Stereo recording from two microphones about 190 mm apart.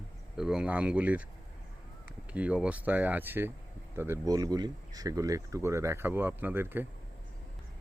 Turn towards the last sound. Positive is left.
turn(degrees=-10)  # may be behind; listen again after turning